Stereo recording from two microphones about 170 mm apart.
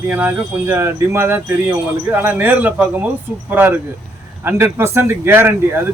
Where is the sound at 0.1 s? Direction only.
10° right (ahead or behind).